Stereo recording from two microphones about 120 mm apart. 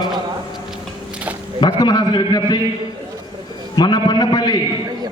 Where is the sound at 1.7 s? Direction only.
30° left (ahead or behind).